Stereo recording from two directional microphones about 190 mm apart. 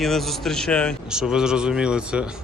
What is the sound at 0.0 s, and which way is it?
A man's voice, centre (ahead or behind).